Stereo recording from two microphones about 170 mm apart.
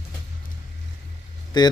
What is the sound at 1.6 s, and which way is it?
Speech, 25° left (ahead or behind).